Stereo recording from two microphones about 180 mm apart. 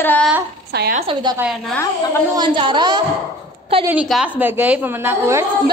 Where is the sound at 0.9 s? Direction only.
30° right (ahead or behind).